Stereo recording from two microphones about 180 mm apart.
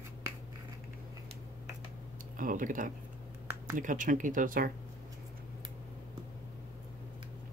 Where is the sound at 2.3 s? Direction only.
45° right (ahead or behind).